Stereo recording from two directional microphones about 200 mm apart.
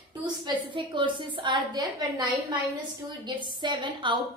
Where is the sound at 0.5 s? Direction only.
25° right (ahead or behind).